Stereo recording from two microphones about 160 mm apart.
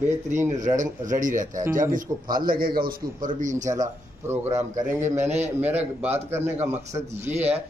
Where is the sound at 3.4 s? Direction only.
50° right (ahead or behind).